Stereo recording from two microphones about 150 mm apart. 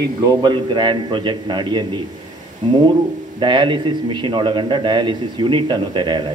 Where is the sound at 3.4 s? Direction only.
35° right (ahead or behind).